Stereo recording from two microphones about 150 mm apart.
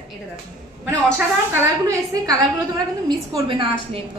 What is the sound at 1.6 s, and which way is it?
Speech, 20° right (ahead or behind).